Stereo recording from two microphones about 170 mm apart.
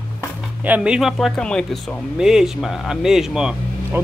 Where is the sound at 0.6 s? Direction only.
10° right (ahead or behind).